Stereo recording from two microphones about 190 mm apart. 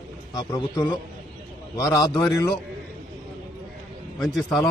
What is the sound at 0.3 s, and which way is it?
A man's voice, 20° left (ahead or behind).